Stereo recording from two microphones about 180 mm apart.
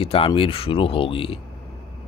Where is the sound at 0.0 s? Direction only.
30° left (ahead or behind).